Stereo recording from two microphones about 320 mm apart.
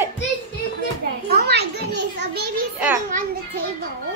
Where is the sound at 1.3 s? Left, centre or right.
Right.